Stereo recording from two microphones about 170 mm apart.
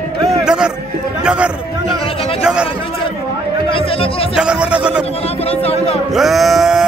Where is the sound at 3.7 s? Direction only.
35° left (ahead or behind).